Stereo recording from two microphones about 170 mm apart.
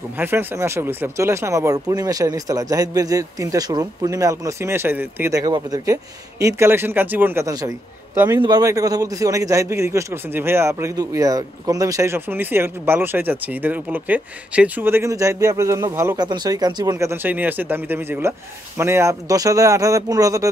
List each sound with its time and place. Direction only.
0.2 s a man's voice: 10° right (ahead or behind)